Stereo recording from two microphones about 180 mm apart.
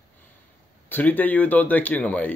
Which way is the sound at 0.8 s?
10° left (ahead or behind).